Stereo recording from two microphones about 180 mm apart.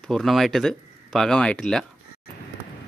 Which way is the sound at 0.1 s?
Centre (ahead or behind).